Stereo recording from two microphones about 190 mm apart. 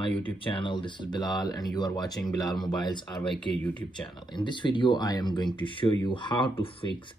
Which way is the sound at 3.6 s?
10° left (ahead or behind).